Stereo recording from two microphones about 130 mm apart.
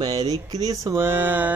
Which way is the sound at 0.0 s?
30° right (ahead or behind).